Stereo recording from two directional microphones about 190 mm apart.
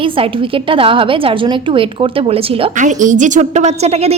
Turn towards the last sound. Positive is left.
turn(degrees=-35)  # may be behind; listen again after turning